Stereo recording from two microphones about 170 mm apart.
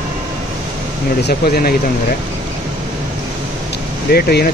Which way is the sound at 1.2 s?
60° left (ahead or behind).